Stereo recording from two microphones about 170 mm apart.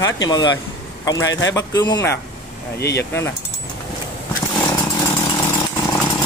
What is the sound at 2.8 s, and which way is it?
Speech, 75° left (ahead or behind).